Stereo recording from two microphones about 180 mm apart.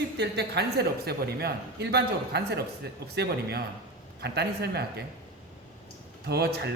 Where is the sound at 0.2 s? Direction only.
70° right (ahead or behind).